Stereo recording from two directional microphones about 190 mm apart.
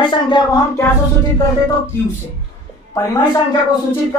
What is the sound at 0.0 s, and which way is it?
Speech, 25° left (ahead or behind).